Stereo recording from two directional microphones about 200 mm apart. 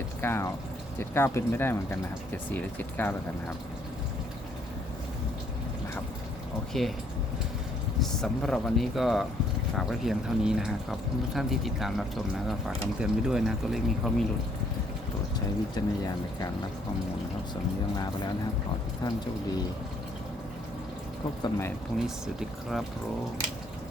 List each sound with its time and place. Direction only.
0.2 s speech: 10° left (ahead or behind)
6.8 s speech: centre (ahead or behind)
8.0 s speech: centre (ahead or behind)
15.7 s speech: 20° left (ahead or behind)
17.5 s speech: 20° left (ahead or behind)
21.9 s speech: centre (ahead or behind)